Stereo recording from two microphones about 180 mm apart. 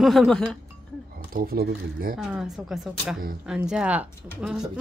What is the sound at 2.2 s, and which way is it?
Speech, centre (ahead or behind).